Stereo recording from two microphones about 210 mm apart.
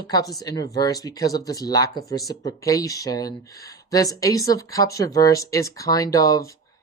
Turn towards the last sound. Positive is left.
turn(degrees=15)  # may be behind; listen again after turning